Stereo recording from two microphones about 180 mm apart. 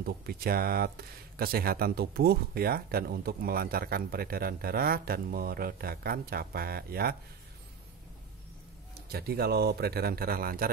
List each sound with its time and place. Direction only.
0.0 s speech: 55° right (ahead or behind)
9.1 s speech: 60° right (ahead or behind)